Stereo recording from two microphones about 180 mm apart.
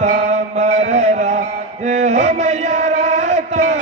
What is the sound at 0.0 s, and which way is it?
Mantra, 40° right (ahead or behind).